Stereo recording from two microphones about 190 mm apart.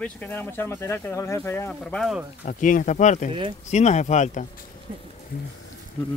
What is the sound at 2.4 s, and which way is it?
Speech, 45° left (ahead or behind).